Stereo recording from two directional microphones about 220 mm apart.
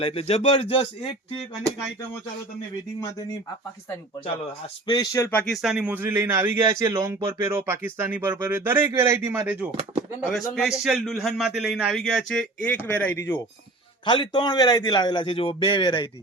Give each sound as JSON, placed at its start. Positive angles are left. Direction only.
{"t": 0.0, "sound": "a man's voice", "side_deg": 25}
{"t": 4.9, "sound": "speech", "side_deg": 15}
{"t": 5.6, "sound": "a man's voice", "side_deg": -5}
{"t": 14.0, "sound": "a man's voice", "side_deg": 20}